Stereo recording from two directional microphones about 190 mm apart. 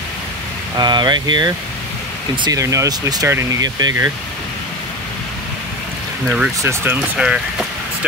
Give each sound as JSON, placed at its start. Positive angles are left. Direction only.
{"t": 0.7, "sound": "speech", "side_deg": -20}
{"t": 6.2, "sound": "speech", "side_deg": -5}